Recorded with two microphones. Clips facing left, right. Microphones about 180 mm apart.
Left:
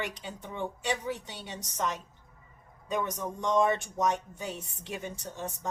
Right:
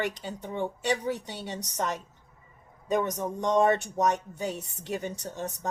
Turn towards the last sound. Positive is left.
turn(degrees=-40)  # may be behind; listen again after turning